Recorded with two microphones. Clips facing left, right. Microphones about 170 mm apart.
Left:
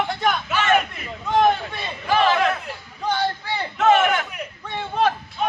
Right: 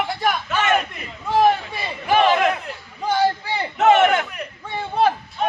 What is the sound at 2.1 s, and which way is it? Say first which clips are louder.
Crowd: right 2 dB; 20° right (ahead or behind).